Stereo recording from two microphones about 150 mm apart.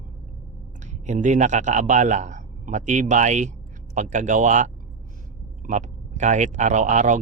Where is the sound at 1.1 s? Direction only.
55° right (ahead or behind).